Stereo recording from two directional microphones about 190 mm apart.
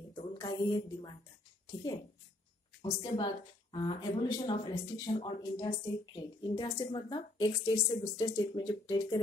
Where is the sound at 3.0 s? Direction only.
20° left (ahead or behind).